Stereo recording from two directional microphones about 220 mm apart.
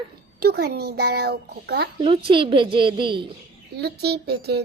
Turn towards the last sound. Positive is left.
turn(degrees=-50)  # may be behind; listen again after turning